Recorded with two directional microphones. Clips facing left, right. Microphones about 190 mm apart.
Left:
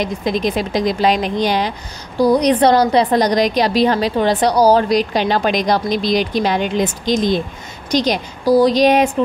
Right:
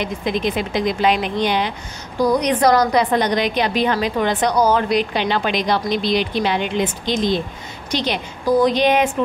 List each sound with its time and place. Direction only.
0.0 s a woman's voice: 40° left (ahead or behind)